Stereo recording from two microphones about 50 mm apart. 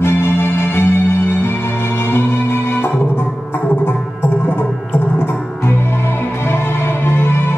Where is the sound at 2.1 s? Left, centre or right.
Left.